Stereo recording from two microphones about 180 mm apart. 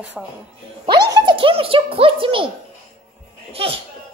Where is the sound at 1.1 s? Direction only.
25° right (ahead or behind).